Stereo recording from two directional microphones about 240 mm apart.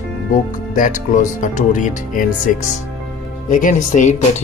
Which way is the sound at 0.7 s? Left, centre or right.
Left.